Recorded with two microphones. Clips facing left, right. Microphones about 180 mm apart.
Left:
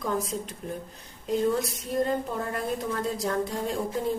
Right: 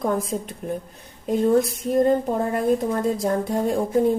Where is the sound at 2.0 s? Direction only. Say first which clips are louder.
Right 9 dB; 50° right (ahead or behind).